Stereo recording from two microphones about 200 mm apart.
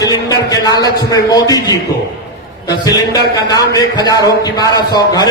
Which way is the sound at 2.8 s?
20° left (ahead or behind).